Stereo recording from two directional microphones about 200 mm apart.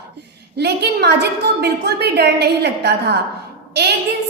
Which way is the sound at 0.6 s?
55° right (ahead or behind).